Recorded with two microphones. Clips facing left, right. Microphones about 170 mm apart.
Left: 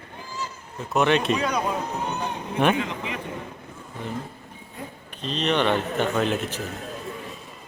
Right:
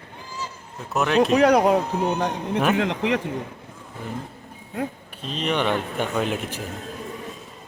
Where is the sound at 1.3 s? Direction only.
75° right (ahead or behind).